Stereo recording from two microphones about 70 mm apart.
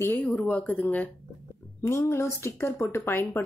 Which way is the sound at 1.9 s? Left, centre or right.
Left.